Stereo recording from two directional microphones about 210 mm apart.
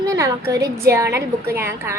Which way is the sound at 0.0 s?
15° right (ahead or behind).